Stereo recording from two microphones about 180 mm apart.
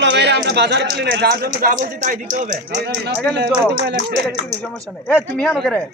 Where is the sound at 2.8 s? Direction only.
65° right (ahead or behind).